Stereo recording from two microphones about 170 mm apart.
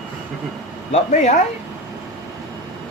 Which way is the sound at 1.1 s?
45° left (ahead or behind).